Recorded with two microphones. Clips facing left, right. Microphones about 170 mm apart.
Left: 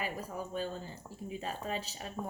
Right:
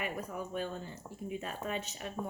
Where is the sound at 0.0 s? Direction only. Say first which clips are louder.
Even; 30° left (ahead or behind).